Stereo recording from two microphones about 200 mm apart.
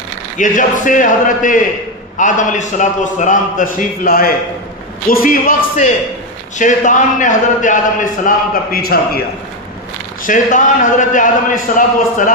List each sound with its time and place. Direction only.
0.3 s a man's voice: 40° left (ahead or behind)
10.2 s a man's voice: 40° left (ahead or behind)